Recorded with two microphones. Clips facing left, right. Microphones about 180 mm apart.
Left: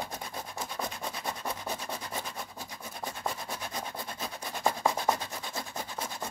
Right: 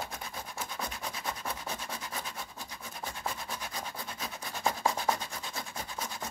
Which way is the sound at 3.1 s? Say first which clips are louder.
Left 2 dB; 25° left (ahead or behind).